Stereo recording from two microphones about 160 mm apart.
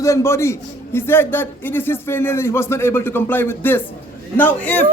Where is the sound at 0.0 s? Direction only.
20° left (ahead or behind).